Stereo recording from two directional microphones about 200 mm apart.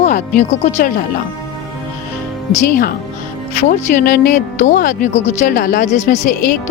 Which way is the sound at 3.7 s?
45° left (ahead or behind).